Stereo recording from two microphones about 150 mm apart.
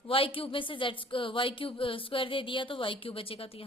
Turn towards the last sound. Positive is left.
turn(degrees=40)  # may be behind; listen again after turning